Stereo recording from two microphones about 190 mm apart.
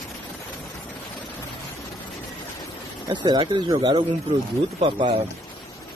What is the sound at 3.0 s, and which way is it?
Speech, 25° right (ahead or behind).